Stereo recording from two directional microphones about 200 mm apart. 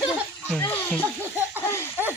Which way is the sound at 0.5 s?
10° left (ahead or behind).